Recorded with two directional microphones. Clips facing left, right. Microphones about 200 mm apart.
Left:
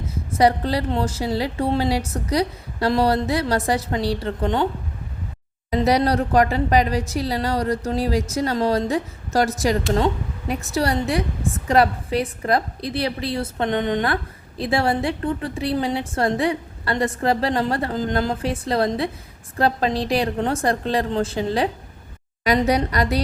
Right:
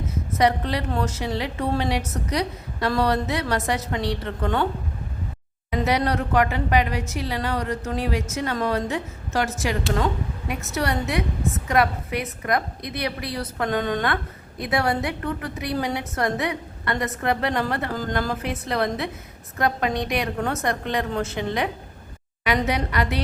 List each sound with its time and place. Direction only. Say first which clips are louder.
0.3 s a woman's voice: left 3 dB; 30° left (ahead or behind)
4.4 s a woman's voice: left 2 dB; 20° left (ahead or behind)
5.7 s a woman's voice: left 4 dB; 35° left (ahead or behind)